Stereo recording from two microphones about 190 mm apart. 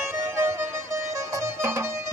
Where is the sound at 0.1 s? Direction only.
10° right (ahead or behind).